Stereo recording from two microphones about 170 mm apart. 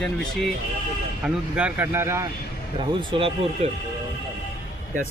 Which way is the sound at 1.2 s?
5° right (ahead or behind).